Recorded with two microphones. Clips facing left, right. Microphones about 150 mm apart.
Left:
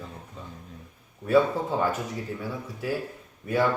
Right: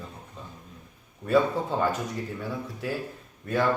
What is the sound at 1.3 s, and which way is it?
Speech, 5° left (ahead or behind).